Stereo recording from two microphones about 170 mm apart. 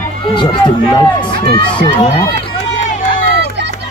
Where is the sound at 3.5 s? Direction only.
90° right.